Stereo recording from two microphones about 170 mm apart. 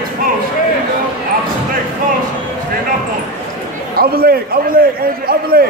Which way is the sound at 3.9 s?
60° right (ahead or behind).